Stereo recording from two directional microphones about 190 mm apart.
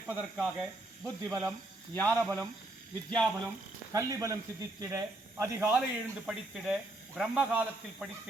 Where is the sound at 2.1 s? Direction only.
10° right (ahead or behind).